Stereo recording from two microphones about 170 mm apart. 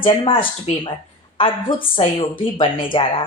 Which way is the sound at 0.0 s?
30° left (ahead or behind).